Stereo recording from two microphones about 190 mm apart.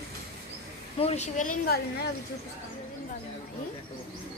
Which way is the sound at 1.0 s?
35° left (ahead or behind).